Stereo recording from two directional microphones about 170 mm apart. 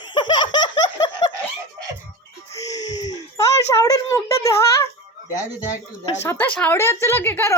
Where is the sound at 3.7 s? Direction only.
20° left (ahead or behind).